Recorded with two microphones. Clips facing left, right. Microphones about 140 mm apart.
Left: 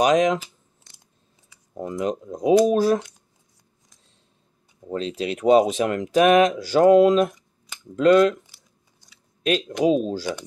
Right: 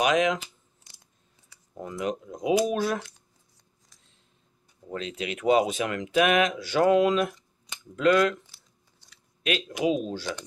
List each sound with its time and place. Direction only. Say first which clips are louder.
0.0 s speech: left 5 dB; 35° left (ahead or behind)
1.8 s speech: left 5 dB; 30° left (ahead or behind)
4.8 s speech: left 6 dB; 30° left (ahead or behind)
9.4 s speech: left 6 dB; 35° left (ahead or behind)